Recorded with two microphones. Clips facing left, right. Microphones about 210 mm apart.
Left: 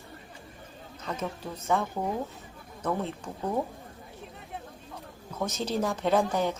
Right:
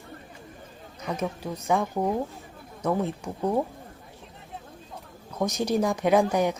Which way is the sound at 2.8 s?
15° right (ahead or behind).